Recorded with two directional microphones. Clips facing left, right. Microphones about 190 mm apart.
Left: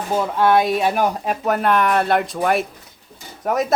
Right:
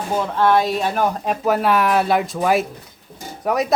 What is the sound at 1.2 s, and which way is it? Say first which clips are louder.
A man's voice: right 1 dB; centre (ahead or behind).